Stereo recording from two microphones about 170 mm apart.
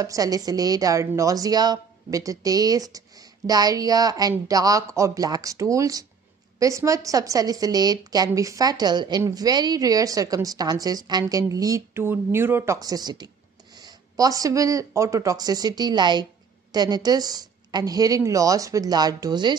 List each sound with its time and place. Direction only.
0.0 s speech: 20° right (ahead or behind)